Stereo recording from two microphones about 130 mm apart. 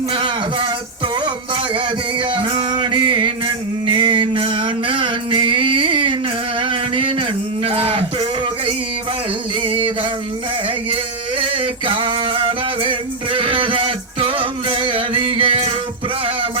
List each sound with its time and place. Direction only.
0.1 s music: 40° right (ahead or behind)
6.6 s a sound: 40° right (ahead or behind)
10.8 s male singing: 40° right (ahead or behind)